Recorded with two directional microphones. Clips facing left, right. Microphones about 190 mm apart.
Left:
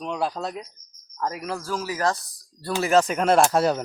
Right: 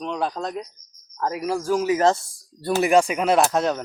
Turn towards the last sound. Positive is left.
turn(degrees=5)  # may be behind; listen again after turning